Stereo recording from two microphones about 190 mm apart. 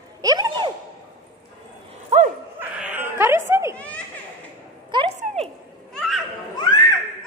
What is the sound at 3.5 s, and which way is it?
Speech, 15° right (ahead or behind).